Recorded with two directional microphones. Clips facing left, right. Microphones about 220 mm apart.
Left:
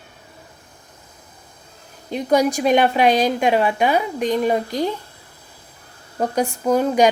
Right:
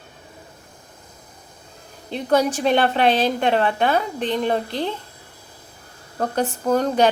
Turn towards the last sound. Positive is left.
turn(degrees=10)  # may be behind; listen again after turning